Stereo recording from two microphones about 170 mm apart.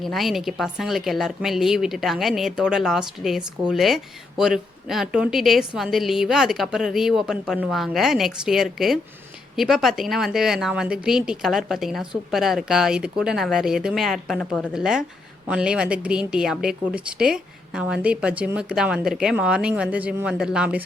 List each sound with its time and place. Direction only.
0.0 s a woman's voice: centre (ahead or behind)